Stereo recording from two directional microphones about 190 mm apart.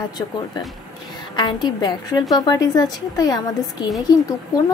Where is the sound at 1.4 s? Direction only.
20° left (ahead or behind).